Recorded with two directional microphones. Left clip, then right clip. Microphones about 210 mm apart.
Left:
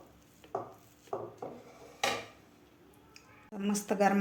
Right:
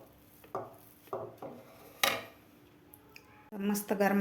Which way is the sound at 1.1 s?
40° right (ahead or behind).